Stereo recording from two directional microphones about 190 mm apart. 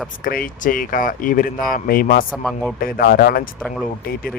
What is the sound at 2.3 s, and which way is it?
Speech, centre (ahead or behind).